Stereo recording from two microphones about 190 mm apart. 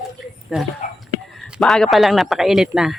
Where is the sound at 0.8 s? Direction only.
45° left (ahead or behind).